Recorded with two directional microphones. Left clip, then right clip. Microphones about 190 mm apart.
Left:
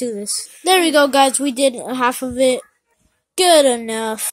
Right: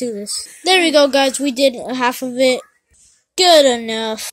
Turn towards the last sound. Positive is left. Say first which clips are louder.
# right 1 dB
turn(degrees=0)  # may be behind; listen again after turning